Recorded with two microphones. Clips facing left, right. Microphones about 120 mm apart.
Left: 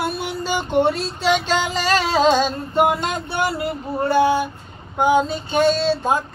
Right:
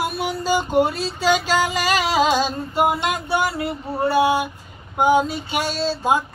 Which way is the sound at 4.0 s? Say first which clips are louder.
Left 1 dB; 10° right (ahead or behind).